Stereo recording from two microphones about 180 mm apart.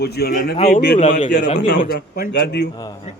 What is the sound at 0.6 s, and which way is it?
A man's voice, 50° left (ahead or behind).